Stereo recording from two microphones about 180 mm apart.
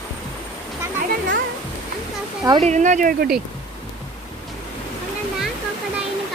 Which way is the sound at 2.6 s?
40° right (ahead or behind).